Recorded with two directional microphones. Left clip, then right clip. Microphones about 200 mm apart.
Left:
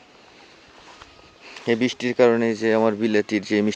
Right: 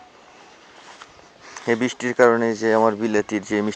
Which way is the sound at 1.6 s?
20° left (ahead or behind).